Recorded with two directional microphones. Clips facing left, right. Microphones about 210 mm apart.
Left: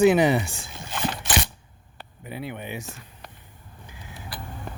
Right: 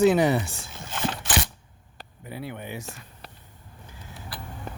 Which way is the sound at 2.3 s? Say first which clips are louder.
Left 2 dB; 20° left (ahead or behind).